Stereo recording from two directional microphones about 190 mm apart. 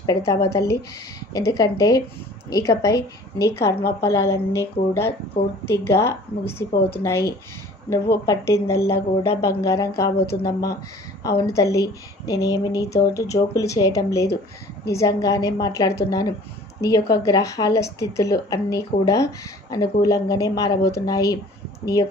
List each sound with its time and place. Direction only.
0.0 s speech: 15° left (ahead or behind)